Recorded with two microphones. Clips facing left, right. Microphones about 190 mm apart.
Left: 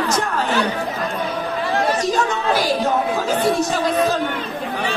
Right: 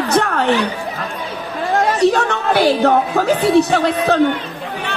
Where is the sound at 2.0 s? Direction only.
65° right (ahead or behind).